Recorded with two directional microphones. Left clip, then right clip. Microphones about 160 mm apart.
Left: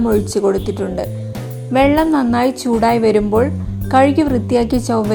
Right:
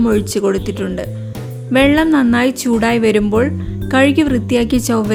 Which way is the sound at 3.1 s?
50° right (ahead or behind).